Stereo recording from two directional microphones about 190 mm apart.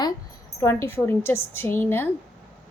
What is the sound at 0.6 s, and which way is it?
A woman's voice, 15° left (ahead or behind).